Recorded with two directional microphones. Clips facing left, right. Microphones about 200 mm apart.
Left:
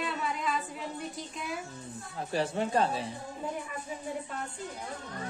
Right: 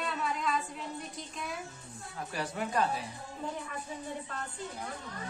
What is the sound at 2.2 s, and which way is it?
Speech, 30° left (ahead or behind).